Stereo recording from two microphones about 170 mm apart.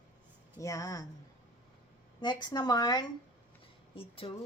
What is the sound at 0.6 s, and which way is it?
Speech, 20° left (ahead or behind).